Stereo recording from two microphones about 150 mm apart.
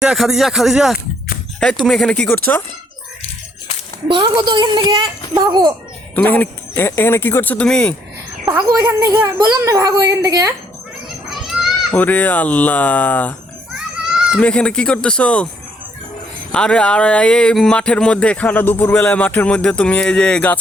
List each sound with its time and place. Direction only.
0.0 s speech: centre (ahead or behind); by 2.6 s 15° left (ahead or behind)
4.1 s a woman's voice: 30° right (ahead or behind)
6.1 s speech: 10° left (ahead or behind)
8.6 s a woman's voice: 20° right (ahead or behind)
11.3 s children playing: centre (ahead or behind)
11.9 s speech: 10° left (ahead or behind)
14.3 s speech: 5° left (ahead or behind)
16.5 s speech: 5° left (ahead or behind)